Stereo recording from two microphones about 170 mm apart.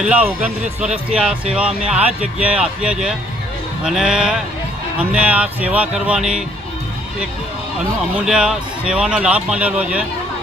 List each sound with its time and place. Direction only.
0.0 s speech: 10° right (ahead or behind)
8.1 s speech: 5° right (ahead or behind)